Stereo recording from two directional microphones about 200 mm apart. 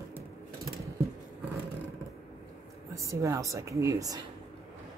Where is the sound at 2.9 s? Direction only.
15° right (ahead or behind).